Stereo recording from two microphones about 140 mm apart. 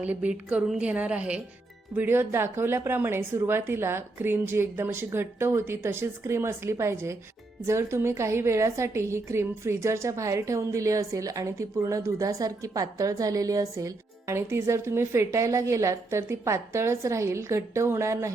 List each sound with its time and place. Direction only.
0.0 s a woman's voice: 10° right (ahead or behind)